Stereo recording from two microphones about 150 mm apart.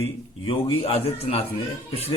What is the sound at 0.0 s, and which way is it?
Speech, 40° left (ahead or behind).